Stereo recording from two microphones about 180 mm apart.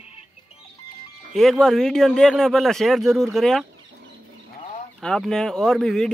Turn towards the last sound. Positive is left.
turn(degrees=0)  # may be behind; listen again after turning